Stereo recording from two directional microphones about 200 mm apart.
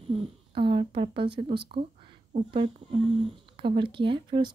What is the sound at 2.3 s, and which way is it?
A woman's voice, 30° right (ahead or behind).